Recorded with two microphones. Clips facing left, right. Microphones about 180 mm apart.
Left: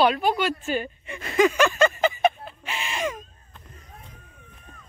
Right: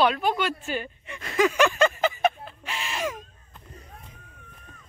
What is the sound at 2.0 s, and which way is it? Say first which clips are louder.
Chicken: left 2 dB; centre (ahead or behind).